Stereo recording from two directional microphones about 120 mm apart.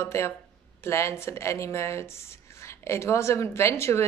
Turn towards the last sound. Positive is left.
turn(degrees=25)  # may be behind; listen again after turning